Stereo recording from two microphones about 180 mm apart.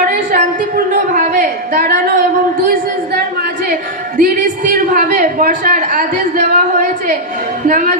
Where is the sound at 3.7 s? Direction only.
50° right (ahead or behind).